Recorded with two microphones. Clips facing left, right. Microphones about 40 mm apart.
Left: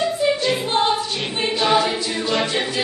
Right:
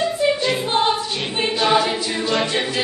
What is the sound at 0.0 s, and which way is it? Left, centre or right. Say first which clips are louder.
Choir: even; centre.